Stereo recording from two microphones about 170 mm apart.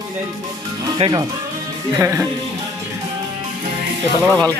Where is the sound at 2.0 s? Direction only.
15° right (ahead or behind).